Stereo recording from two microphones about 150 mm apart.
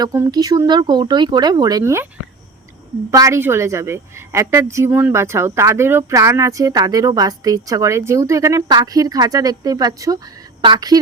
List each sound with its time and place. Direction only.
0.0 s a woman's voice: 20° right (ahead or behind)
3.1 s a woman's voice: 20° right (ahead or behind)